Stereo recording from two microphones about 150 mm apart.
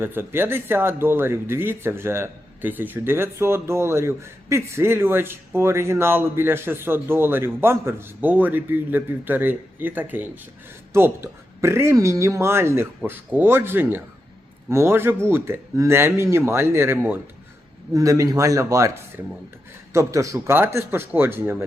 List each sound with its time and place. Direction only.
0.0 s speech: 15° right (ahead or behind)